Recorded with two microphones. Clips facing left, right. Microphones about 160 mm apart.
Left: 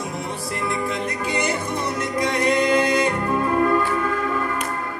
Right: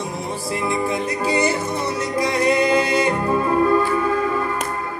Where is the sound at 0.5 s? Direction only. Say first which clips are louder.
Right 4 dB; 30° right (ahead or behind).